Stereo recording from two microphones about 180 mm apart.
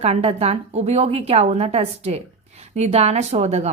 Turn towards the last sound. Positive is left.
turn(degrees=-35)  # may be behind; listen again after turning